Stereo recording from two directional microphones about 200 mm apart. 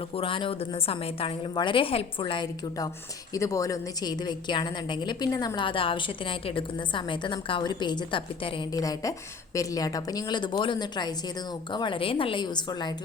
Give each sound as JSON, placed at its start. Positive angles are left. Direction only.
{"t": 0.1, "sound": "a woman's voice", "side_deg": 25}